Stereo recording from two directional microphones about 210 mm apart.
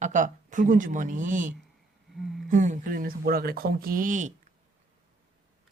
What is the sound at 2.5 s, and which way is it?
Speech, 35° right (ahead or behind).